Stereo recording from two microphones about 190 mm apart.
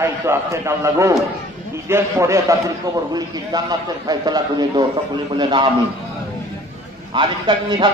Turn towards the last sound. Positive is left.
turn(degrees=-25)  # may be behind; listen again after turning